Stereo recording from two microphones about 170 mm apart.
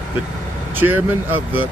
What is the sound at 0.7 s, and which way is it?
Speech, 10° right (ahead or behind).